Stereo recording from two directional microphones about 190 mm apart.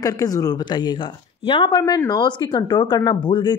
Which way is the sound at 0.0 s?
20° left (ahead or behind).